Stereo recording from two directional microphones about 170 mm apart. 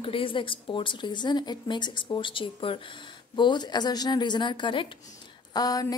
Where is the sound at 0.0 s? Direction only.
30° left (ahead or behind).